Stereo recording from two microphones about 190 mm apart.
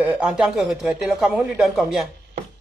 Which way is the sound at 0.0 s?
5° right (ahead or behind).